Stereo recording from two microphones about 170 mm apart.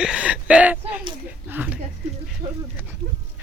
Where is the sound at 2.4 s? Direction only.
35° right (ahead or behind).